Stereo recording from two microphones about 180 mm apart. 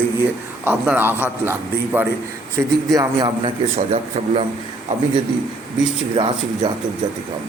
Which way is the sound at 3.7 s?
40° right (ahead or behind).